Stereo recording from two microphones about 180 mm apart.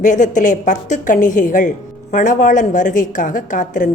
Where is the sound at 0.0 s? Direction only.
45° left (ahead or behind).